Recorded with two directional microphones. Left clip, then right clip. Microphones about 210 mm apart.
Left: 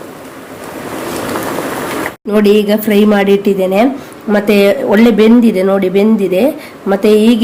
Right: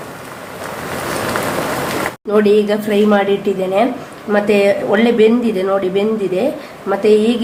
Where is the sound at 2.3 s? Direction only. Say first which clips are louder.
Left 3 dB; 35° left (ahead or behind).